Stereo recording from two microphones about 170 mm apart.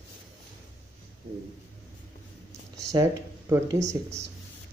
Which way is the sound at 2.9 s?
20° right (ahead or behind).